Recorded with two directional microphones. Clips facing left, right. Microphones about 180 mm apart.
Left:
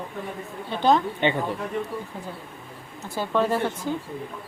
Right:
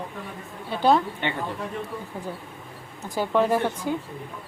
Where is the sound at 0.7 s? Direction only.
10° right (ahead or behind).